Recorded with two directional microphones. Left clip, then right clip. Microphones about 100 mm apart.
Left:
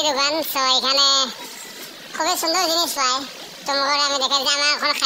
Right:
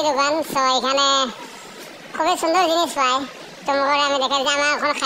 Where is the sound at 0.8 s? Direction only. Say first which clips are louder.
Even; 25° right (ahead or behind).